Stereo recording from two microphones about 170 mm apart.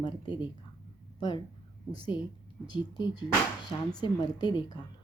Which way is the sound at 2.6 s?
25° left (ahead or behind).